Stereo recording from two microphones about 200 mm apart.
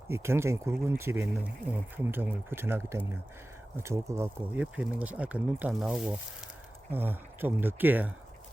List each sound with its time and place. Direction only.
0.1 s speech: 15° right (ahead or behind)